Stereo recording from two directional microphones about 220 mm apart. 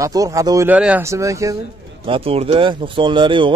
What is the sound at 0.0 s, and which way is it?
Speech, 15° right (ahead or behind).